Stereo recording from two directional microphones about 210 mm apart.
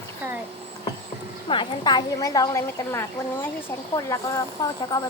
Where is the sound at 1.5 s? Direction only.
20° left (ahead or behind).